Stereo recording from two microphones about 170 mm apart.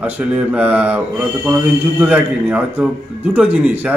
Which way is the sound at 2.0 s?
10° right (ahead or behind).